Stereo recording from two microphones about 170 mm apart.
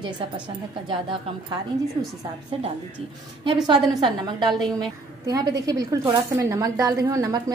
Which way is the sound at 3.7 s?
25° right (ahead or behind).